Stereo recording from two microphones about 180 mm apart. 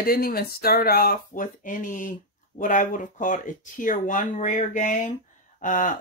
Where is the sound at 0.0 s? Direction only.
55° left (ahead or behind).